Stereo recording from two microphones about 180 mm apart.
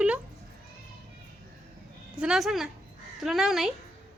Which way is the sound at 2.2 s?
5° right (ahead or behind).